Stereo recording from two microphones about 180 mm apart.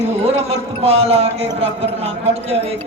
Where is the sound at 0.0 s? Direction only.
35° right (ahead or behind).